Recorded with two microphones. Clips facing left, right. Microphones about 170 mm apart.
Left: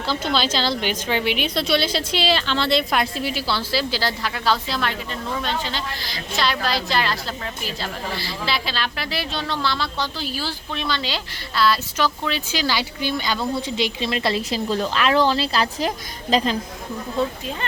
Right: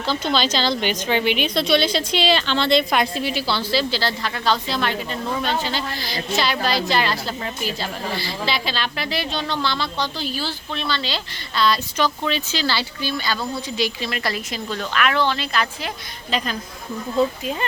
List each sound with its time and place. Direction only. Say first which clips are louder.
0.0 s a woman's voice: right 1 dB; 5° left (ahead or behind); by 16.6 s 25° left (ahead or behind)